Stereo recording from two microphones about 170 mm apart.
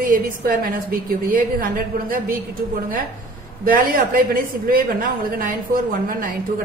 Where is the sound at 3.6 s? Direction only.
55° right (ahead or behind).